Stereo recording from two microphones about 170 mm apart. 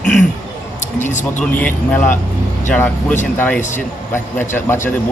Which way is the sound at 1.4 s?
10° left (ahead or behind).